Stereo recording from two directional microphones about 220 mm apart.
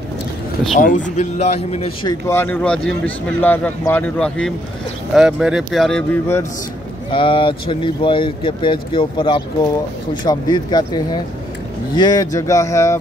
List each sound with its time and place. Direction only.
0.7 s speech: 35° left (ahead or behind)
2.2 s speech: 10° left (ahead or behind)
7.1 s speech: 25° left (ahead or behind)